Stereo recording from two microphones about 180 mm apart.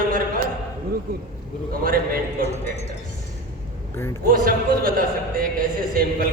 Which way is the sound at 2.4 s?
35° left (ahead or behind).